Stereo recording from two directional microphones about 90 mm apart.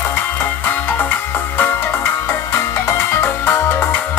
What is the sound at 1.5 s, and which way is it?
Music, 20° left (ahead or behind).